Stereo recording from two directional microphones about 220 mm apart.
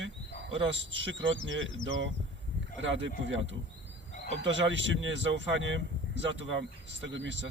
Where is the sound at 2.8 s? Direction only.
55° right (ahead or behind).